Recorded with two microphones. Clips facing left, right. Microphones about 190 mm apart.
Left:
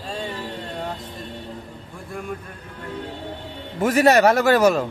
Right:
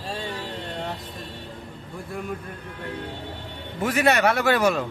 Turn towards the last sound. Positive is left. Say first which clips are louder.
# left 5 dB
turn(degrees=40)  # may be behind; listen again after turning